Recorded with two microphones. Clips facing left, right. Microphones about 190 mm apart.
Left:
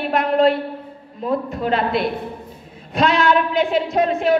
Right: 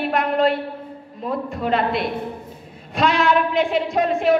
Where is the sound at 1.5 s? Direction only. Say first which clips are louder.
Left 1 dB; centre (ahead or behind).